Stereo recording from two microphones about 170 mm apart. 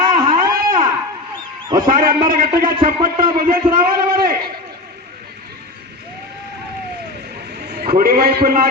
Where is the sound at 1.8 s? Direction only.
55° right (ahead or behind).